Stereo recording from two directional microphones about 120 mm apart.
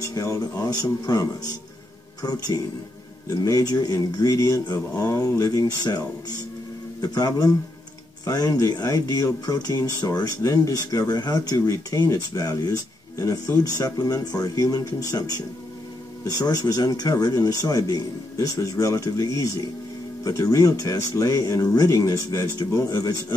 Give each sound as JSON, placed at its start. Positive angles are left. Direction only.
{"t": 0.0, "sound": "speech", "side_deg": 30}